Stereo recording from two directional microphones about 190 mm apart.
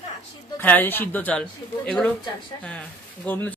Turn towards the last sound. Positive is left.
turn(degrees=10)  # may be behind; listen again after turning